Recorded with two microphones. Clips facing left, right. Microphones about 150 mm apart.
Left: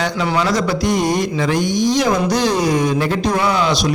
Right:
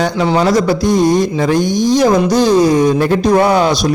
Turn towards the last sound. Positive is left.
turn(degrees=-45)  # may be behind; listen again after turning